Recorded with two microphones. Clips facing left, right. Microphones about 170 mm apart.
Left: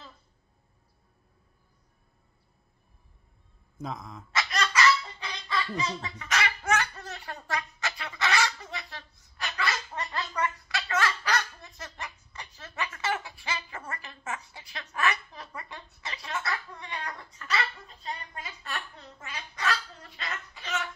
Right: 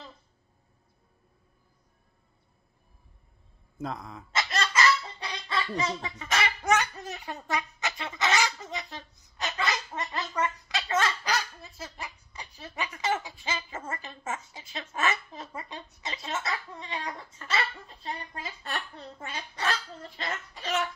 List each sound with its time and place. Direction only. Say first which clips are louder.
3.8 s speech: right 2 dB; centre (ahead or behind)
4.3 s fowl: even; 25° right (ahead or behind)
11.3 s speech: left 1 dB; 10° right (ahead or behind); by 20.6 s 30° right (ahead or behind)